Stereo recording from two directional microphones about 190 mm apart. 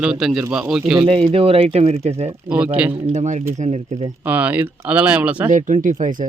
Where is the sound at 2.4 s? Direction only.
5° right (ahead or behind).